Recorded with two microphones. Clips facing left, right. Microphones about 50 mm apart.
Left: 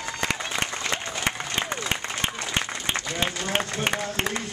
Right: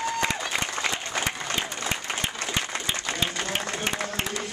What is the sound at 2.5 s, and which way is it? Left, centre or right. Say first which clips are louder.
Applause: left 1 dB; left.